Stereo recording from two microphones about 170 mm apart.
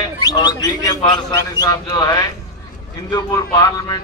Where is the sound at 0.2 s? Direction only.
25° left (ahead or behind).